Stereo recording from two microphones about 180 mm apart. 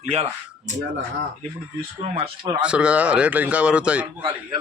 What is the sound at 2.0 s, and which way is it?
Speech, 35° right (ahead or behind).